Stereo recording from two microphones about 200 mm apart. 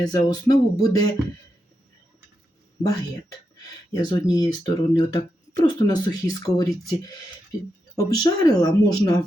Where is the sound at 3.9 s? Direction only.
20° left (ahead or behind).